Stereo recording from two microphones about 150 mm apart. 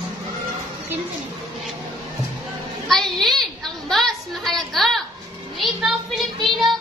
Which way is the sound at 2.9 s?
Centre (ahead or behind).